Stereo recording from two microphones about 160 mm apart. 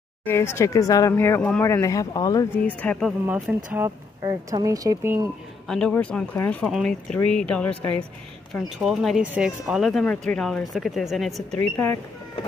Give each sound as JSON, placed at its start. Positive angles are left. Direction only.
{"t": 0.2, "sound": "speech", "side_deg": 15}
{"t": 2.5, "sound": "speech", "side_deg": 10}
{"t": 3.4, "sound": "speech", "side_deg": -15}
{"t": 5.7, "sound": "speech", "side_deg": 5}
{"t": 11.7, "sound": "speech", "side_deg": 10}